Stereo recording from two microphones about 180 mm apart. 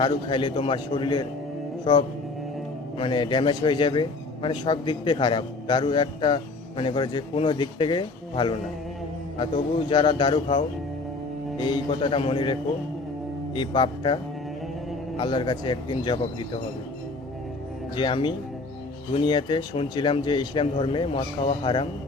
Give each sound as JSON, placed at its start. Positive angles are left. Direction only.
{"t": 0.0, "sound": "a man's voice", "side_deg": 25}
{"t": 9.9, "sound": "a man's voice", "side_deg": 25}
{"t": 13.6, "sound": "a man's voice", "side_deg": 25}
{"t": 15.2, "sound": "a man's voice", "side_deg": 25}
{"t": 17.9, "sound": "a man's voice", "side_deg": 25}